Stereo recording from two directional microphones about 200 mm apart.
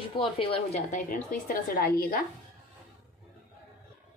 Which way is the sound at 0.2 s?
30° left (ahead or behind).